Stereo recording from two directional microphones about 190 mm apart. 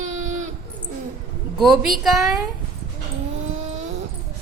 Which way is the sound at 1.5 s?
Centre (ahead or behind).